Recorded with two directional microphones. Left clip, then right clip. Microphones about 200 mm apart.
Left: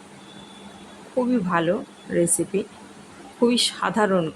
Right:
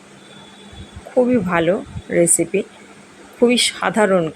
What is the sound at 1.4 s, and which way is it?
Speech, 10° right (ahead or behind).